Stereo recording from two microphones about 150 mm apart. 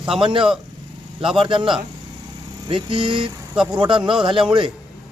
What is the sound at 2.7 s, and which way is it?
Speech, 35° right (ahead or behind).